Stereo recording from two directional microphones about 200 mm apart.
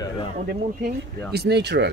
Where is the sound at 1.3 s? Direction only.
55° right (ahead or behind).